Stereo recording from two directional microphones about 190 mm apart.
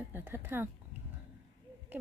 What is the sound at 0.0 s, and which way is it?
Speech, 10° right (ahead or behind).